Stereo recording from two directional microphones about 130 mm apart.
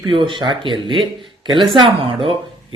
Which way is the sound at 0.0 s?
40° right (ahead or behind).